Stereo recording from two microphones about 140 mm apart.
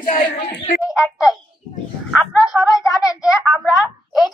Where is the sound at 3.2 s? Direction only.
5° right (ahead or behind).